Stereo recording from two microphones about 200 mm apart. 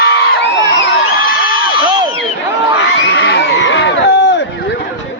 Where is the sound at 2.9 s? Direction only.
60° left (ahead or behind).